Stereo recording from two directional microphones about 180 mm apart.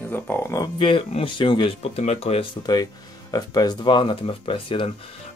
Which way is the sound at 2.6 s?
20° left (ahead or behind).